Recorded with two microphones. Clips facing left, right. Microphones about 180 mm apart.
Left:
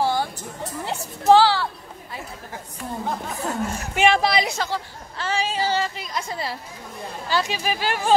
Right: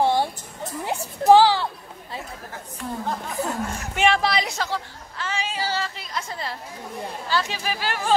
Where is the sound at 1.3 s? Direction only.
15° right (ahead or behind).